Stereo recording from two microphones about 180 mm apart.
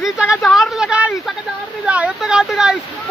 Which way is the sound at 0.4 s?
Centre (ahead or behind).